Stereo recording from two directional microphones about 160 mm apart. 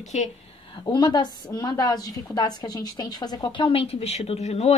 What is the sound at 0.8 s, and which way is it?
A woman's voice, 25° left (ahead or behind).